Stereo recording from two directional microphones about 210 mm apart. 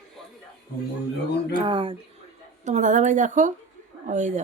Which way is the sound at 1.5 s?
25° right (ahead or behind).